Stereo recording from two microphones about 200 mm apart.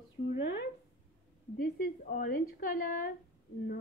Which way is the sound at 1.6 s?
45° left (ahead or behind).